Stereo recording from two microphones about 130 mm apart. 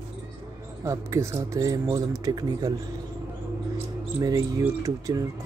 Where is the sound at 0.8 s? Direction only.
20° right (ahead or behind).